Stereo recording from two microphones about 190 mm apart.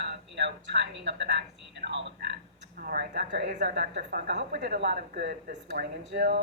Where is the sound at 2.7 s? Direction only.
50° right (ahead or behind).